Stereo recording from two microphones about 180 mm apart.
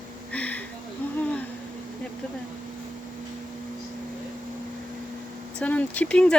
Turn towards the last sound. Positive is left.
turn(degrees=5)  # may be behind; listen again after turning